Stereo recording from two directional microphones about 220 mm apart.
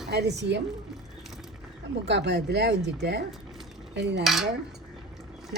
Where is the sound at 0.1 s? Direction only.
50° right (ahead or behind).